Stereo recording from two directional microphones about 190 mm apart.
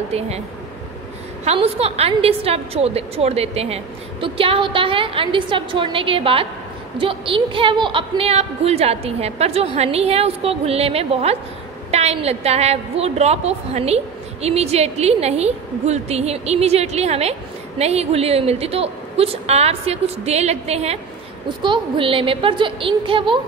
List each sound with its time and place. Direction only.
0.1 s a woman's voice: 35° right (ahead or behind)
1.4 s a woman's voice: 30° right (ahead or behind)